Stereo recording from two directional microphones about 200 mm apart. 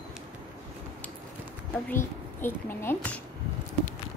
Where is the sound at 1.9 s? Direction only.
10° left (ahead or behind).